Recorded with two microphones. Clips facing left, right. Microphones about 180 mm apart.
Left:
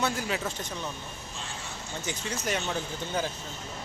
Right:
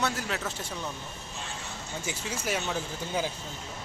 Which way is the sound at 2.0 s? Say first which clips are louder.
Left 1 dB; 5° right (ahead or behind).